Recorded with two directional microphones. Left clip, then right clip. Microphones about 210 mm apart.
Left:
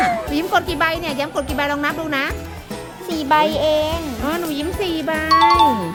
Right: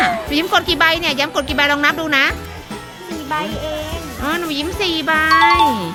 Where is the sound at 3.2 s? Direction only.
60° left (ahead or behind).